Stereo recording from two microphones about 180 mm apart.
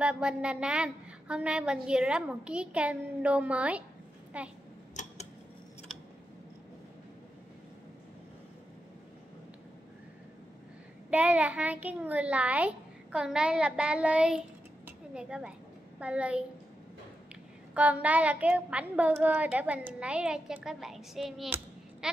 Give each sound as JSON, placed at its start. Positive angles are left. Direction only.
{"t": 0.0, "sound": "a woman's voice", "side_deg": -5}
{"t": 4.9, "sound": "tick-tock", "side_deg": 40}
{"t": 11.1, "sound": "a woman's voice", "side_deg": -5}
{"t": 14.9, "sound": "a sound", "side_deg": -5}
{"t": 16.0, "sound": "a woman's voice", "side_deg": -5}
{"t": 17.7, "sound": "a woman's voice", "side_deg": -10}